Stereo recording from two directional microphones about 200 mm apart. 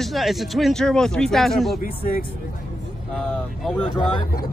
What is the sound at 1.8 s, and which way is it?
Speech, 45° left (ahead or behind).